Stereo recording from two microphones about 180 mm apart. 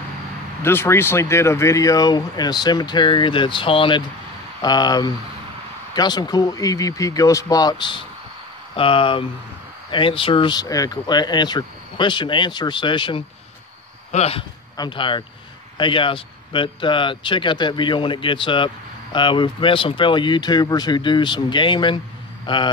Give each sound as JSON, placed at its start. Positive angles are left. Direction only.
{"t": 0.6, "sound": "speech", "side_deg": 15}